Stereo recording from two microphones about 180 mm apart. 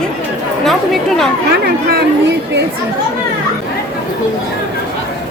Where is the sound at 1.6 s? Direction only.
70° right (ahead or behind).